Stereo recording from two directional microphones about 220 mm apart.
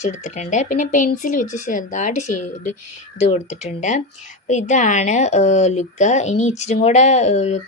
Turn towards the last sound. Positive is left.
turn(degrees=30)  # may be behind; listen again after turning